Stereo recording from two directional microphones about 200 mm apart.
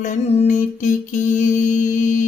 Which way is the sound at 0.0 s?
40° left (ahead or behind).